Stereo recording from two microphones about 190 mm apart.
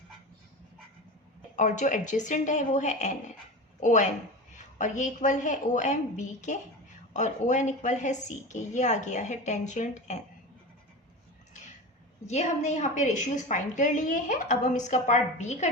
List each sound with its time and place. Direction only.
1.5 s a woman's voice: 40° left (ahead or behind)
12.3 s a woman's voice: 35° left (ahead or behind)